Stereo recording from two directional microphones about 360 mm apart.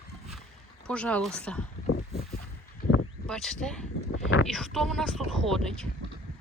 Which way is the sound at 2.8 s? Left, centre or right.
Left.